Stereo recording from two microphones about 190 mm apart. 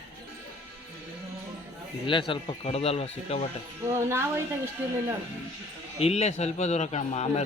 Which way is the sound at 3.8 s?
15° right (ahead or behind).